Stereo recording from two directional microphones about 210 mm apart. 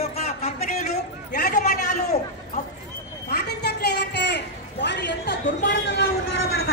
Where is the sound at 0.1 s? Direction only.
30° left (ahead or behind).